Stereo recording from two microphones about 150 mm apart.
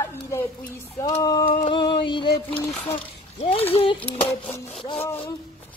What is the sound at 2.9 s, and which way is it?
Speech, 40° left (ahead or behind).